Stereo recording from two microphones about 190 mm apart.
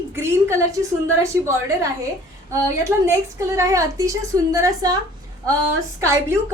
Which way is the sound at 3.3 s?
15° right (ahead or behind).